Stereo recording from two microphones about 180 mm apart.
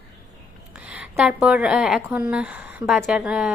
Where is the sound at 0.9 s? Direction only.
5° right (ahead or behind).